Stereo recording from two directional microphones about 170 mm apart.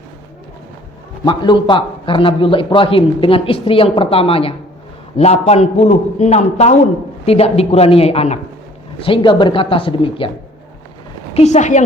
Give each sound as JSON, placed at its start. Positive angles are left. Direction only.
{"t": 1.2, "sound": "a man's voice", "side_deg": 25}
{"t": 11.3, "sound": "a woman's voice", "side_deg": 45}